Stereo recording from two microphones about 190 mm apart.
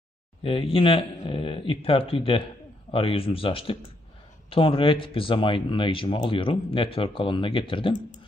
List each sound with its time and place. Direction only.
0.4 s speech: 30° left (ahead or behind)